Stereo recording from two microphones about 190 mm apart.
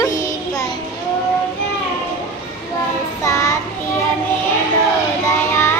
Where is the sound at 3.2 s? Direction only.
15° left (ahead or behind).